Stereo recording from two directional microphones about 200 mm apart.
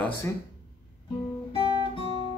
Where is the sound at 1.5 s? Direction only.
25° left (ahead or behind).